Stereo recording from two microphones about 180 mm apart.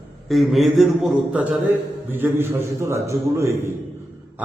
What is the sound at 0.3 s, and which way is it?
A man's voice, centre (ahead or behind).